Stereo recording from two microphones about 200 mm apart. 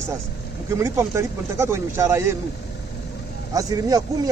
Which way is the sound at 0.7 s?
15° right (ahead or behind).